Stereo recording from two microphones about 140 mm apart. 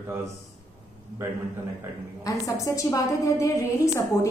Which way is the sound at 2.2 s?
25° left (ahead or behind).